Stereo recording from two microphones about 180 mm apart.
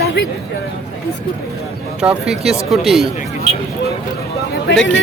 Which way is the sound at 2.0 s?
5° right (ahead or behind).